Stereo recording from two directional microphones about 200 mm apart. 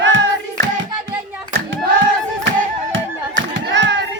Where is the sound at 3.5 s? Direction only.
60° right (ahead or behind).